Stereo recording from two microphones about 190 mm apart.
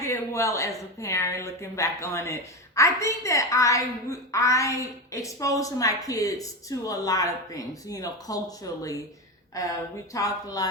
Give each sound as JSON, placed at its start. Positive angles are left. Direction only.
{"t": 0.0, "sound": "a woman's voice", "side_deg": 15}
{"t": 10.1, "sound": "speech", "side_deg": 20}